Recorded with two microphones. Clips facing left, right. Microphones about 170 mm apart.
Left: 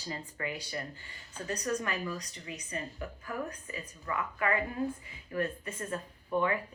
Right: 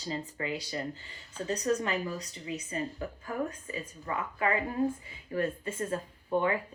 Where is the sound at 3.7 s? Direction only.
25° right (ahead or behind).